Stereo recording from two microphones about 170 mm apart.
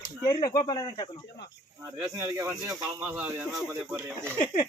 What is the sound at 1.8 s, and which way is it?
A man's voice, 15° right (ahead or behind).